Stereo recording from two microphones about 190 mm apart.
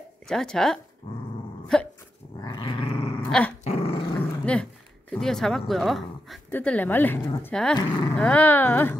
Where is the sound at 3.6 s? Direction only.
30° left (ahead or behind).